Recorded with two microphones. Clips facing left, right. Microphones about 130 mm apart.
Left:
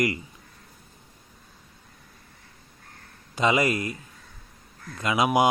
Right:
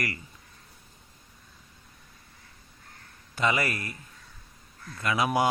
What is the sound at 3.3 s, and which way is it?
A man's voice, 20° left (ahead or behind).